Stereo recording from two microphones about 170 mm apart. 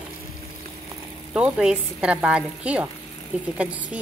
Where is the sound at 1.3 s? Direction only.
5° right (ahead or behind).